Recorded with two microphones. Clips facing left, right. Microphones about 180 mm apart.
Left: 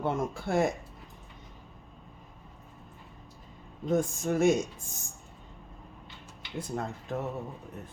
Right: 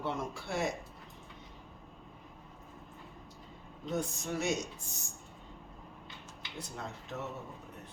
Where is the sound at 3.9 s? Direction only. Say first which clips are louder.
Left 8 dB; 50° left (ahead or behind).